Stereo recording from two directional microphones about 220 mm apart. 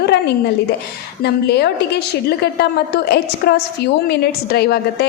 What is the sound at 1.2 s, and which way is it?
A woman's voice, 50° left (ahead or behind).